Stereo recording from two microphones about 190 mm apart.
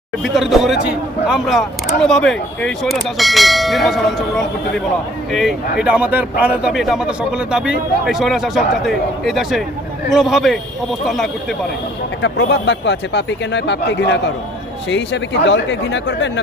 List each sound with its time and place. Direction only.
0.2 s speech: centre (ahead or behind)
12.2 s speech: 70° left (ahead or behind)